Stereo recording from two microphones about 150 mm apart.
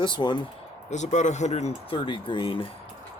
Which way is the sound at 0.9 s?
50° left (ahead or behind).